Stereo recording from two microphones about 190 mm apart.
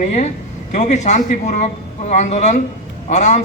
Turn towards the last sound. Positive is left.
turn(degrees=40)  # may be behind; listen again after turning